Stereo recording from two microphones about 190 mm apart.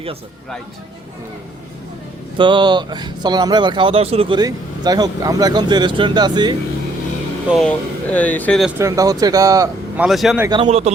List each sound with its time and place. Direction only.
2.4 s speech: 25° right (ahead or behind)
7.5 s speech: 5° left (ahead or behind)
8.8 s speech: 15° right (ahead or behind)
10.0 s speech: centre (ahead or behind)
10.4 s speech: 25° right (ahead or behind)
10.7 s a man's voice: 35° right (ahead or behind)